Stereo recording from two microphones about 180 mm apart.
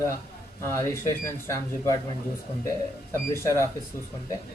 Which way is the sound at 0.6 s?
15° left (ahead or behind).